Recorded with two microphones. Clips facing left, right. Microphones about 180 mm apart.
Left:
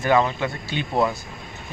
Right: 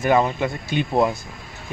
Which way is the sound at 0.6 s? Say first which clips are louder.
Right 5 dB; 50° right (ahead or behind).